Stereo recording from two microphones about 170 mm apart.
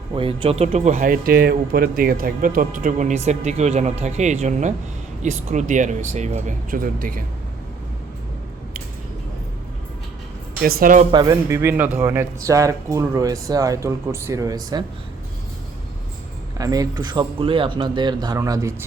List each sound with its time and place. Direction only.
0.1 s speech: 30° right (ahead or behind); by 7.3 s 55° right (ahead or behind)
10.6 s speech: 60° right (ahead or behind)
11.1 s speech: 25° right (ahead or behind)
16.6 s speech: 20° right (ahead or behind)